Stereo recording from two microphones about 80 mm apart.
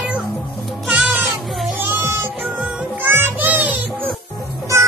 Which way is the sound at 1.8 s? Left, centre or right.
Right.